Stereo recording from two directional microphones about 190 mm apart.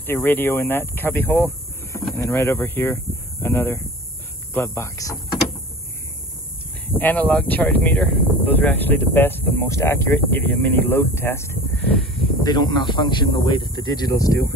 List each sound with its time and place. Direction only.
0.0 s speech: 10° left (ahead or behind)
7.0 s speech: 10° left (ahead or behind)
12.4 s speech: 20° left (ahead or behind)